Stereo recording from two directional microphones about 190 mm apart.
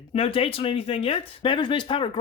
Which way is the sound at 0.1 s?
30° left (ahead or behind).